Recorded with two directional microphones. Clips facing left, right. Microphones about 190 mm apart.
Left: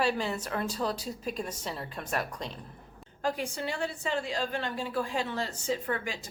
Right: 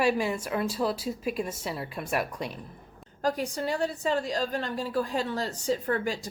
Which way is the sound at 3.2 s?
40° right (ahead or behind).